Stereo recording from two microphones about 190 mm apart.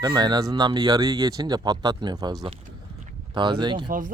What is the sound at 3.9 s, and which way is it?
Speech, 45° right (ahead or behind).